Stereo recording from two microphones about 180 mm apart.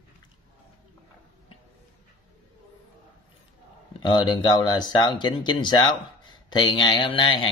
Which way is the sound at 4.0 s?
25° left (ahead or behind).